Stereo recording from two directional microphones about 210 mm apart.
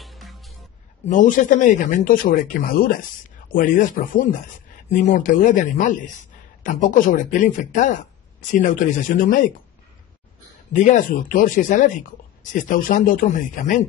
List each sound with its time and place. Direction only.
0.0 s music: centre (ahead or behind)
1.0 s speech: 40° left (ahead or behind)
10.7 s speech: 35° left (ahead or behind)